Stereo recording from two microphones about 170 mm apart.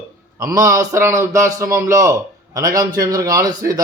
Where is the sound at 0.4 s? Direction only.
20° right (ahead or behind).